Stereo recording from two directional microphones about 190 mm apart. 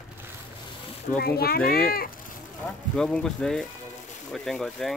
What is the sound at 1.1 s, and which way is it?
Speech, 55° left (ahead or behind).